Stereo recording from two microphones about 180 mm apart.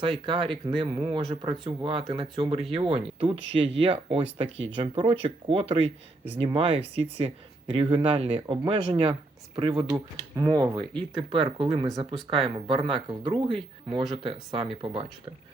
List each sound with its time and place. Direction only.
0.0 s speech: 30° right (ahead or behind)
11.9 s speech: centre (ahead or behind)
12.3 s speech: 30° right (ahead or behind)